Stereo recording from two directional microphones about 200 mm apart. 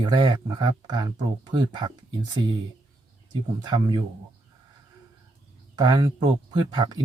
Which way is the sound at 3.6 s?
20° right (ahead or behind).